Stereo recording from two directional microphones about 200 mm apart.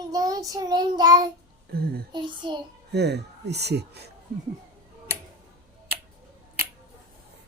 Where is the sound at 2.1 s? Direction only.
25° right (ahead or behind).